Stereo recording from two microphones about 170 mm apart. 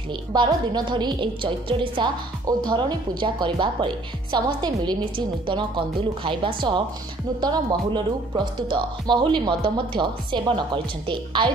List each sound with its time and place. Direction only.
0.3 s a woman's voice: 25° right (ahead or behind)